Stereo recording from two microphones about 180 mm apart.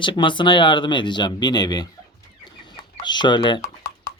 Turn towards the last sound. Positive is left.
turn(degrees=20)  # may be behind; listen again after turning